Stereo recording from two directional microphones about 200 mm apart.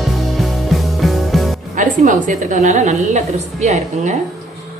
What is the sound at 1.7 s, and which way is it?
A woman's voice, 40° right (ahead or behind).